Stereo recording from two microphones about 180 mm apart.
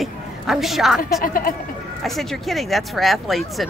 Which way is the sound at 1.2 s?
50° left (ahead or behind).